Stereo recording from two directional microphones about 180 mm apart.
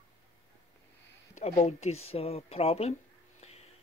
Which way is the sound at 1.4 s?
40° left (ahead or behind).